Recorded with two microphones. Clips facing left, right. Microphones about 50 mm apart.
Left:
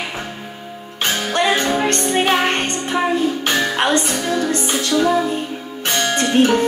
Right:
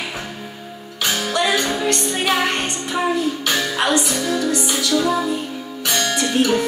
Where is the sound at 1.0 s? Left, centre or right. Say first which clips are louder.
Left 2 dB; left.